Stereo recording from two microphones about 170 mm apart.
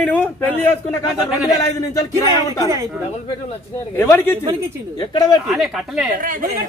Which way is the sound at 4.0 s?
15° left (ahead or behind).